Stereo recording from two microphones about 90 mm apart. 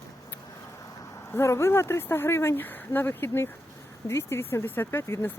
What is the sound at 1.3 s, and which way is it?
Speech, 30° left (ahead or behind).